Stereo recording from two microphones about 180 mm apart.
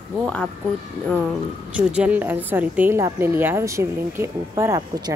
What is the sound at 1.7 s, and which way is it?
A woman's voice, 5° right (ahead or behind).